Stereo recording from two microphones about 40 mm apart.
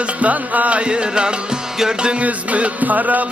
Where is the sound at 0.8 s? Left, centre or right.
Right.